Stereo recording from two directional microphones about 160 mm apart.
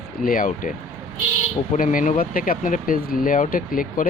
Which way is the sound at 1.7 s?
60° left (ahead or behind).